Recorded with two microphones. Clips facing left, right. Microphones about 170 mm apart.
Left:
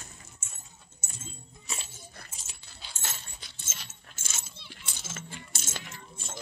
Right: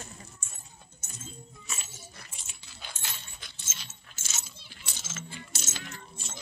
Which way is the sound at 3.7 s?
55° left (ahead or behind).